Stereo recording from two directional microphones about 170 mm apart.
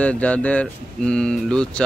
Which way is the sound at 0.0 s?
10° left (ahead or behind).